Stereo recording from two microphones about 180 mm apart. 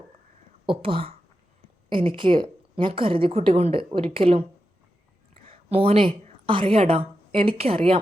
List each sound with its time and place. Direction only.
0.6 s a woman's voice: 30° right (ahead or behind)
5.5 s a woman's voice: 30° right (ahead or behind)